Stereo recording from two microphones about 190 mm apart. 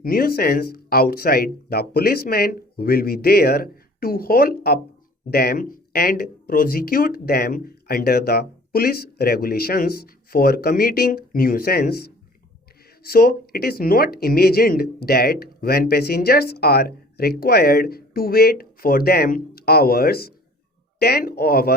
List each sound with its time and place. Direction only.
0.0 s speech: 50° left (ahead or behind)
13.1 s speech: 50° left (ahead or behind)